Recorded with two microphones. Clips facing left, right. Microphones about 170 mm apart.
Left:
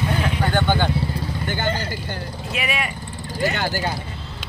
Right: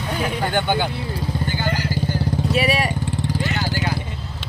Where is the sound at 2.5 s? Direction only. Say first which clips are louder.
Right 5 dB; 35° right (ahead or behind).